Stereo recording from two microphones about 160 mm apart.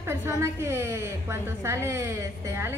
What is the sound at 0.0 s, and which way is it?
A woman's voice, 15° right (ahead or behind).